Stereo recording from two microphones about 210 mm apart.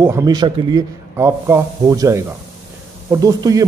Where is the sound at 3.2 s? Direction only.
15° right (ahead or behind).